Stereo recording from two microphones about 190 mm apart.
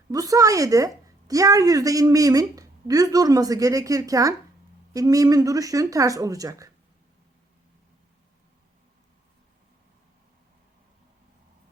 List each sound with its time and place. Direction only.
0.1 s a woman's voice: 20° right (ahead or behind)